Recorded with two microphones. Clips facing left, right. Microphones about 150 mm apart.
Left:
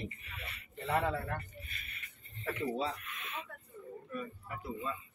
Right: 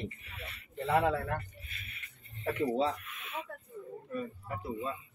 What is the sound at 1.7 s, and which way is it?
Music, 5° right (ahead or behind).